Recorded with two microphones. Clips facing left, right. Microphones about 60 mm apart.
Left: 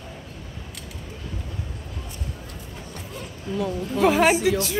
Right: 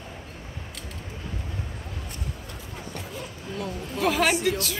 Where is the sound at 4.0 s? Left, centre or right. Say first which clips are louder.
Left 5 dB; left.